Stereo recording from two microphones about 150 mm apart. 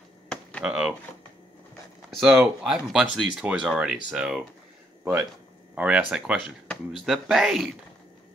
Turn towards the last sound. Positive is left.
turn(degrees=0)  # may be behind; listen again after turning